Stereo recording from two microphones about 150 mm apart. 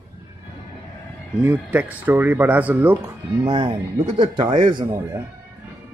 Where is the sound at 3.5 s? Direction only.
35° right (ahead or behind).